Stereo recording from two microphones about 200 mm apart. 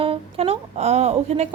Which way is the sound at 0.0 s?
30° right (ahead or behind).